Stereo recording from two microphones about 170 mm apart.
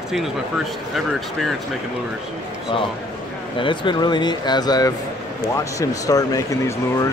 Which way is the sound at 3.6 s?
30° left (ahead or behind).